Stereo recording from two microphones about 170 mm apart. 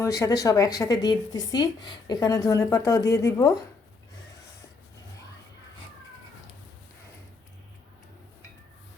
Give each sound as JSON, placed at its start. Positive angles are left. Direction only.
{"t": 0.0, "sound": "speech", "side_deg": 20}